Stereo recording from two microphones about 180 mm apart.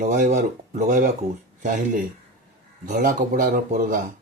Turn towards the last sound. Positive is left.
turn(degrees=-45)  # may be behind; listen again after turning